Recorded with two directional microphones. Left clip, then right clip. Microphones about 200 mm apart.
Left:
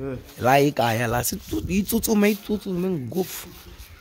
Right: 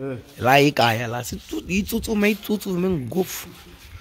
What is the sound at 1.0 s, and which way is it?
Speech, 30° left (ahead or behind).